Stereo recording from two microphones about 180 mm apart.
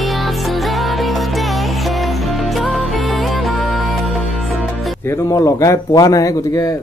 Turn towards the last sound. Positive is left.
turn(degrees=20)  # may be behind; listen again after turning